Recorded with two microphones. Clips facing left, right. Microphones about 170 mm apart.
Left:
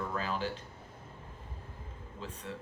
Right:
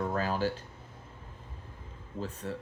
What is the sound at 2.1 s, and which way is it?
Speech, 45° right (ahead or behind).